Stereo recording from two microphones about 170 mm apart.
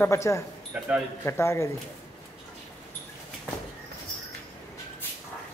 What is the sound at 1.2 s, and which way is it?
Speech, 15° left (ahead or behind).